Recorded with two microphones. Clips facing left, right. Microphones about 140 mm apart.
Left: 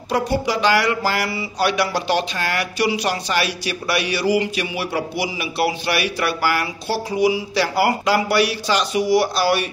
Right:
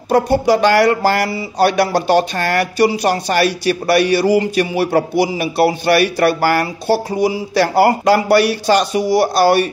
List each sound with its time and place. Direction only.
0.1 s speech: 50° right (ahead or behind)